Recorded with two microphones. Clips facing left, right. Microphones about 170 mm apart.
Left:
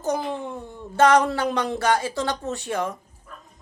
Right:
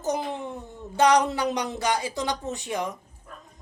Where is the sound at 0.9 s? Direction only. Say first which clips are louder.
Left 3 dB; 15° right (ahead or behind).